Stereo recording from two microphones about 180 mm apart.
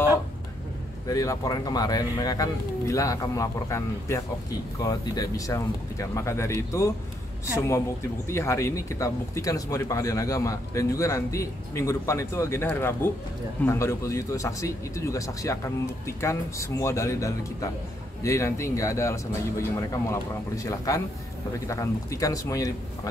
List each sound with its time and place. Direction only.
1.0 s speech: 20° left (ahead or behind)